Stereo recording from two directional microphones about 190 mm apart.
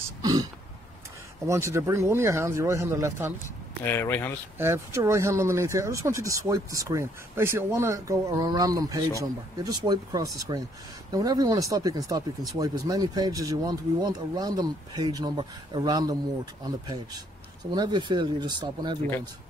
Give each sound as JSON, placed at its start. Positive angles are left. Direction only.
{"t": 0.2, "sound": "throat clearing", "side_deg": -20}
{"t": 1.5, "sound": "speech", "side_deg": -15}
{"t": 3.4, "sound": "speech", "side_deg": 10}
{"t": 4.6, "sound": "speech", "side_deg": -15}